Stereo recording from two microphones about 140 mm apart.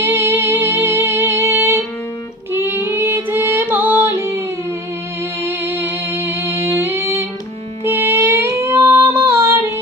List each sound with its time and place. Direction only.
0.0 s music: 15° right (ahead or behind)
7.9 s child singing: 15° right (ahead or behind)